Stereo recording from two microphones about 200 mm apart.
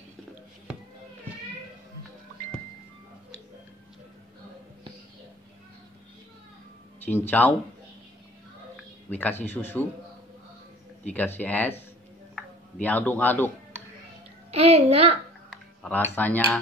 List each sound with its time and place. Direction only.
7.1 s speech: 10° left (ahead or behind)
9.1 s speech: 10° left (ahead or behind)
11.1 s speech: 10° left (ahead or behind)
12.8 s speech: 10° left (ahead or behind)
14.5 s a child's voice: 30° right (ahead or behind)
15.5 s a sound: 5° left (ahead or behind)
16.2 s speech: 10° left (ahead or behind)